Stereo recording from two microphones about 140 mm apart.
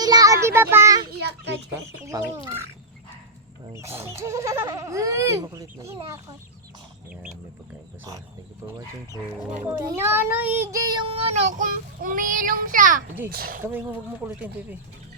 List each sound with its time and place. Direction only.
0.0 s child singing: 25° right (ahead or behind)
2.0 s speech: 20° right (ahead or behind)
3.7 s speech: 20° right (ahead or behind)
9.6 s a child's voice: 15° right (ahead or behind)
11.1 s child singing: 45° right (ahead or behind)
11.5 s child singing: 75° right (ahead or behind)
13.3 s speech: 90° right
13.6 s a child's voice: 15° right (ahead or behind)